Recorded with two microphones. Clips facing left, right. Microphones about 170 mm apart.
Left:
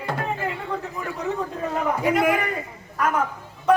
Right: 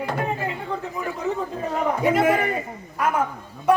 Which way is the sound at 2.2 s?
30° right (ahead or behind).